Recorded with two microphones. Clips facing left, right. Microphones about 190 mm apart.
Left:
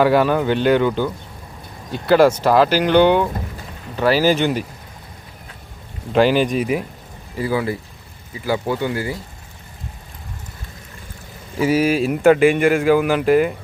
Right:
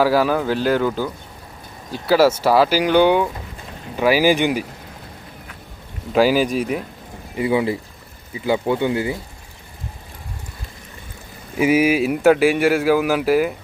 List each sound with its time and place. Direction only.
0.0 s speech: centre (ahead or behind)
6.1 s speech: 5° right (ahead or behind)
7.3 s speech: 20° right (ahead or behind)
11.5 s speech: 10° right (ahead or behind)